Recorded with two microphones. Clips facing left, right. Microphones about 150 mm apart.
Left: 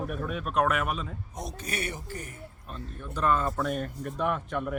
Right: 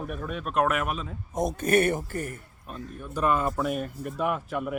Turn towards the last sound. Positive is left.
turn(degrees=-5)  # may be behind; listen again after turning